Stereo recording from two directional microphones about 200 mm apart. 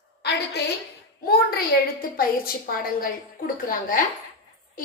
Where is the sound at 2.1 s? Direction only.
45° left (ahead or behind).